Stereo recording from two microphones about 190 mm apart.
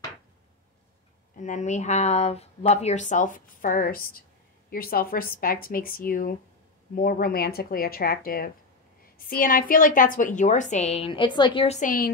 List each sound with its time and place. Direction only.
1.3 s speech: 40° left (ahead or behind)